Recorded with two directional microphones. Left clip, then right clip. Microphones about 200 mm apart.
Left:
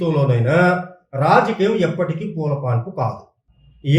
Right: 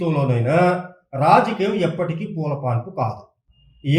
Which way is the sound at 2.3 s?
35° right (ahead or behind).